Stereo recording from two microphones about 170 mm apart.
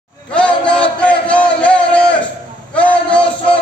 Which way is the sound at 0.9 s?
5° left (ahead or behind).